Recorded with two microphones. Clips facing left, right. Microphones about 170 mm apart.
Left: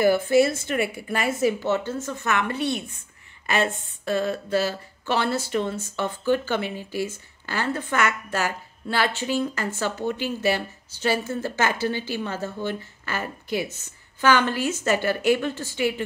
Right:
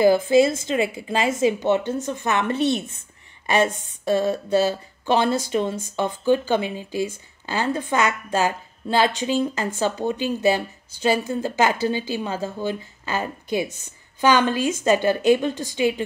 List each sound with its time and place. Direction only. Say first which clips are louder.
0.7 s a woman's voice: right 3 dB; 20° right (ahead or behind)
4.3 s speech: right 4 dB; 20° right (ahead or behind)